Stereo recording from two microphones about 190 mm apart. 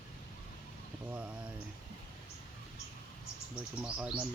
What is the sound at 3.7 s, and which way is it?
Speech, 5° right (ahead or behind).